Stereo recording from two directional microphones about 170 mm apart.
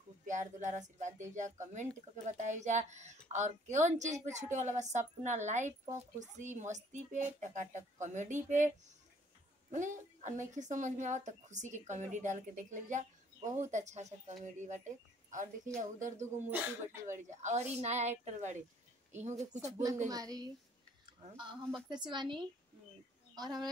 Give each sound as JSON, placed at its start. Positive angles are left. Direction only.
{"t": 0.3, "sound": "speech", "side_deg": -45}
{"t": 20.1, "sound": "speech", "side_deg": -20}